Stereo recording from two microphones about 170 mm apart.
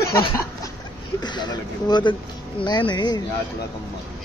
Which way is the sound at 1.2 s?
25° left (ahead or behind).